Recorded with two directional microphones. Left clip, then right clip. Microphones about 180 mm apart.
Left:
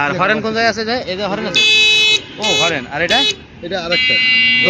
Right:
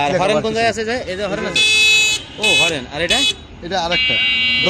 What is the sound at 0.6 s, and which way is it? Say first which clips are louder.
Speech: left 2 dB; 20° right (ahead or behind).